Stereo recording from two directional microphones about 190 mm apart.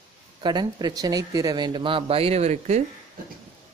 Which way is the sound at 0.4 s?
25° right (ahead or behind).